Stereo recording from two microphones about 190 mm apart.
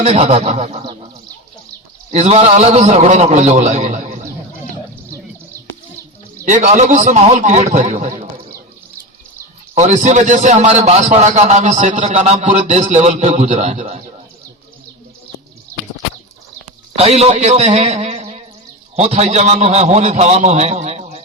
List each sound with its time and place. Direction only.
0.0 s a man's voice: 35° right (ahead or behind)
2.0 s a man's voice: 35° right (ahead or behind)
6.4 s a man's voice: 40° right (ahead or behind)
9.7 s a man's voice: 40° right (ahead or behind)
16.9 s a man's voice: 35° right (ahead or behind)